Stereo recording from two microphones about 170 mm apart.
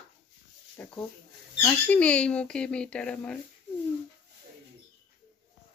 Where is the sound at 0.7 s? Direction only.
10° left (ahead or behind).